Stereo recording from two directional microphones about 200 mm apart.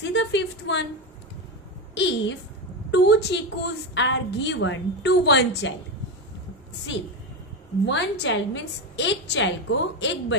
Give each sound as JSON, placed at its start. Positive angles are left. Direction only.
{"t": 0.0, "sound": "a woman's voice", "side_deg": 60}
{"t": 2.0, "sound": "a woman's voice", "side_deg": 60}
{"t": 7.8, "sound": "a woman's voice", "side_deg": 65}